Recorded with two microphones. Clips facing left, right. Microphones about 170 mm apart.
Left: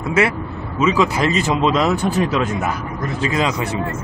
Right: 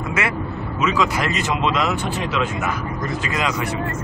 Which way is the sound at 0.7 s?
30° left (ahead or behind).